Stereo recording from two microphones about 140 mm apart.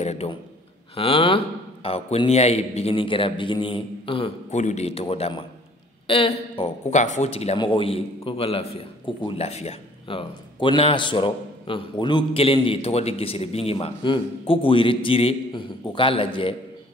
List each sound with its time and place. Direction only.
0.0 s a sound: 50° left (ahead or behind)
0.9 s a man's voice: 40° left (ahead or behind)
4.6 s speech: 55° left (ahead or behind)
7.5 s a man's voice: 35° left (ahead or behind)